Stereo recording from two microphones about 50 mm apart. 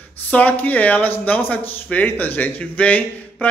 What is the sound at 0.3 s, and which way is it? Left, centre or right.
Speech, left.